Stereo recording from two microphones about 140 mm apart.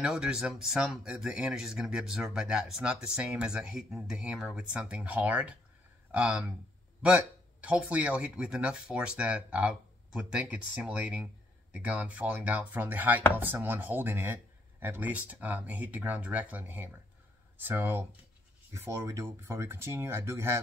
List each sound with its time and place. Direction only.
0.0 s speech: 5° right (ahead or behind)